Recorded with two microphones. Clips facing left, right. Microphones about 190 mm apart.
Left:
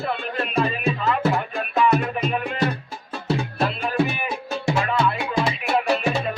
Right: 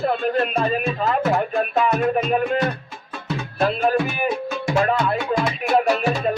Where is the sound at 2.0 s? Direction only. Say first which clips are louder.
Right 5 dB; 40° right (ahead or behind).